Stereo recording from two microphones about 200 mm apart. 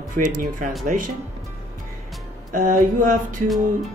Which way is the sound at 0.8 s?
40° right (ahead or behind).